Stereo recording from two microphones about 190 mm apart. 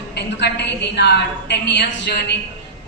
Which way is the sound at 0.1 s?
60° left (ahead or behind).